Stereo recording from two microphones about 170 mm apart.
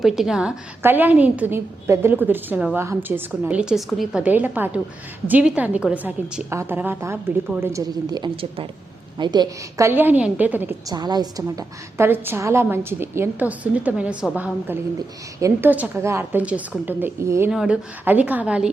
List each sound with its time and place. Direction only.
0.0 s a woman's voice: centre (ahead or behind)
10.9 s a woman's voice: 25° right (ahead or behind); by 18.7 s 5° right (ahead or behind)